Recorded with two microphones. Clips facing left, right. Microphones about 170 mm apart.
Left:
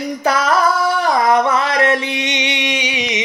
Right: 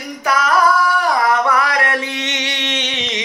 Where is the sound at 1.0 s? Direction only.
20° left (ahead or behind).